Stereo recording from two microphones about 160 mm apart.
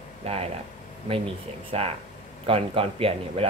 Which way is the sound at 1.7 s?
40° right (ahead or behind).